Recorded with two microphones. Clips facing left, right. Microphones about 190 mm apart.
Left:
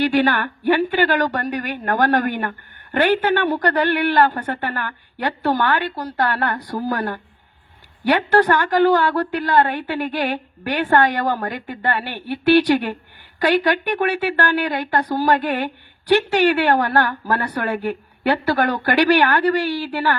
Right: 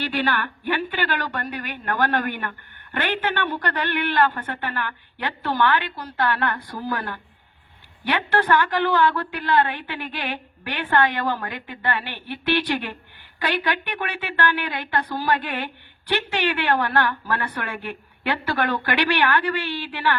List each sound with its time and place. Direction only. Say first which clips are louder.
0.0 s speech: left 7 dB; 50° left (ahead or behind)